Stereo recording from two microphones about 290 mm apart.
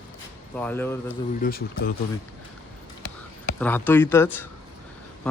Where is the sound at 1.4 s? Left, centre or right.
Left.